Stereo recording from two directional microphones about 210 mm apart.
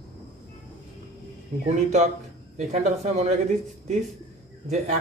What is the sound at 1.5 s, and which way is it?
Speech, 30° right (ahead or behind).